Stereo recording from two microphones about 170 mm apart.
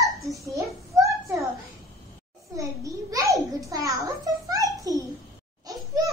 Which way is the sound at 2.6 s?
20° right (ahead or behind).